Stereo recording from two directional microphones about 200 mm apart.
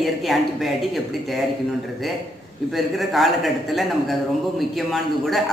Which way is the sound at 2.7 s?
Centre (ahead or behind).